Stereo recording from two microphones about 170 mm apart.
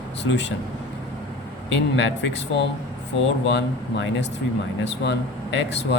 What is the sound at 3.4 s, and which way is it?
Speech, 90° left.